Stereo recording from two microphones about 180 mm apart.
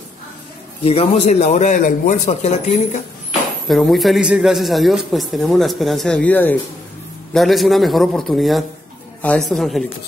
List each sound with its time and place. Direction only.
0.8 s a man's voice: 35° left (ahead or behind)
3.6 s a man's voice: centre (ahead or behind)